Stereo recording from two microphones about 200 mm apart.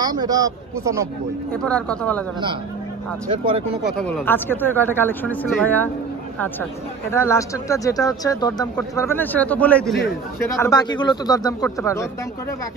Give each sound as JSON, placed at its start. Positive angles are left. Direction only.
{"t": 0.0, "sound": "speech", "side_deg": -20}
{"t": 1.5, "sound": "speech", "side_deg": 5}
{"t": 3.3, "sound": "speech", "side_deg": -25}
{"t": 4.1, "sound": "speech", "side_deg": 10}
{"t": 7.1, "sound": "speech", "side_deg": 15}
{"t": 10.6, "sound": "speech", "side_deg": 20}